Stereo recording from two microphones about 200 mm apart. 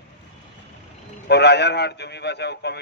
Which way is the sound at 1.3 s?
55° left (ahead or behind).